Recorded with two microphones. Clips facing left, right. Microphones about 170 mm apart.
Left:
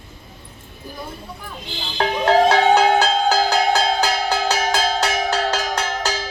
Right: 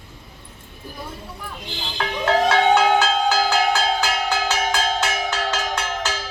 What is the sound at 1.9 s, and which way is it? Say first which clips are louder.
Music: left 4 dB; 35° left (ahead or behind).